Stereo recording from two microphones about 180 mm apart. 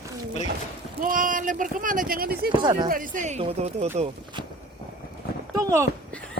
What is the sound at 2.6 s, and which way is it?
Speech, 25° right (ahead or behind).